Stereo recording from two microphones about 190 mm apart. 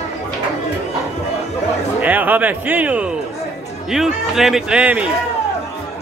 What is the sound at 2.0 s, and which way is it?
Speech, 10° right (ahead or behind).